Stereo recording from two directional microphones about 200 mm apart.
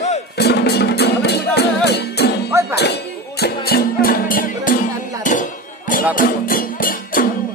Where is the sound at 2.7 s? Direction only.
55° left (ahead or behind).